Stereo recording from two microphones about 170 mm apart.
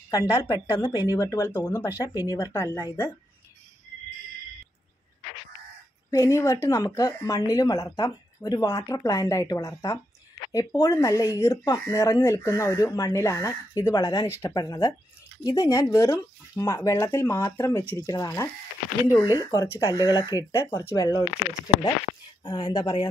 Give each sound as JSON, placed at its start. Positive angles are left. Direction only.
{"t": 0.1, "sound": "speech", "side_deg": 20}
{"t": 6.0, "sound": "speech", "side_deg": 20}
{"t": 22.4, "sound": "speech", "side_deg": 25}